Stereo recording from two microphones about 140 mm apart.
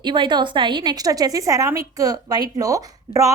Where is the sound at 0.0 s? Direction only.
35° right (ahead or behind).